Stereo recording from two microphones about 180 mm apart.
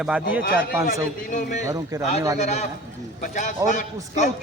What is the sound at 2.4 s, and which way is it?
A man's voice, 40° left (ahead or behind).